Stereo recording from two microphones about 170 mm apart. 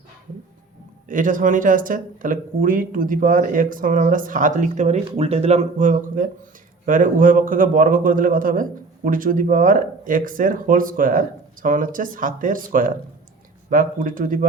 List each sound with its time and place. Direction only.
1.0 s speech: 50° right (ahead or behind)